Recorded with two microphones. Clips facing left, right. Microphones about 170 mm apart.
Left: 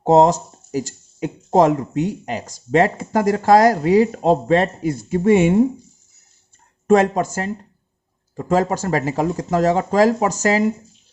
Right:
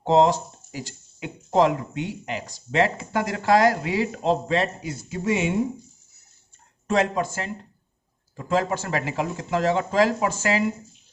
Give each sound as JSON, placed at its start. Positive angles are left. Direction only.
{"t": 0.0, "sound": "speech", "side_deg": 40}
{"t": 6.8, "sound": "speech", "side_deg": 45}